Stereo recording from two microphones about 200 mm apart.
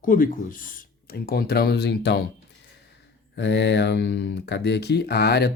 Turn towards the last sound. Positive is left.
turn(degrees=55)  # may be behind; listen again after turning